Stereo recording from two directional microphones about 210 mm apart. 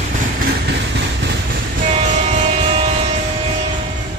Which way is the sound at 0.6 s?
55° right (ahead or behind).